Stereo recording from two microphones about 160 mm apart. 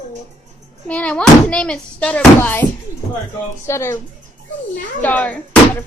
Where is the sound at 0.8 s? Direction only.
10° left (ahead or behind).